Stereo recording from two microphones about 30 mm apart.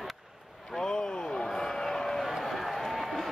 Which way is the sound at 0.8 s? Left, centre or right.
Left.